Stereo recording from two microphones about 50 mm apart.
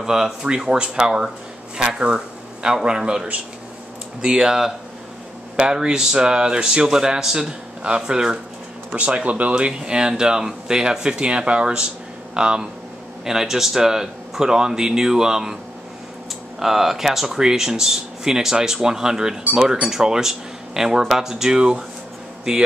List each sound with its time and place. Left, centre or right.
0.0 s speech: centre
16.5 s speech: centre